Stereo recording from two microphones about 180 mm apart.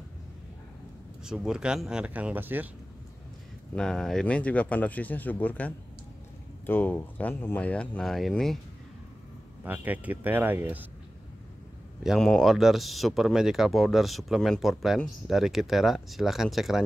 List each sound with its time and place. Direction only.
1.2 s speech: 5° right (ahead or behind)
3.7 s speech: 5° left (ahead or behind)
9.7 s speech: 10° right (ahead or behind)
12.0 s speech: centre (ahead or behind)